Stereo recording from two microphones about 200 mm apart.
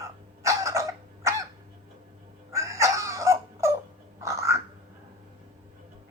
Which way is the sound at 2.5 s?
15° right (ahead or behind).